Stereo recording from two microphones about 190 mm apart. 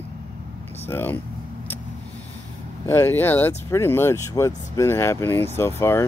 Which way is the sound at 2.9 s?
10° left (ahead or behind).